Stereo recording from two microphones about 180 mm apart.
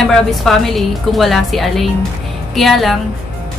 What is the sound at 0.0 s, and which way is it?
A woman's voice, centre (ahead or behind).